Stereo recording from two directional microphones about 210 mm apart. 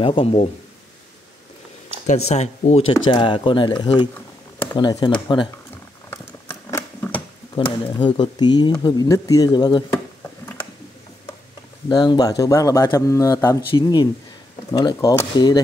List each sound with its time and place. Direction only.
0.0 s speech: 25° left (ahead or behind)
2.2 s speech: 30° left (ahead or behind)
6.5 s a sound: 10° left (ahead or behind)
7.5 s speech: 25° left (ahead or behind)
11.9 s speech: 20° left (ahead or behind)